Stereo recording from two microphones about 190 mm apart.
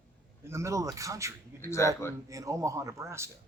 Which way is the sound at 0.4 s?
15° right (ahead or behind).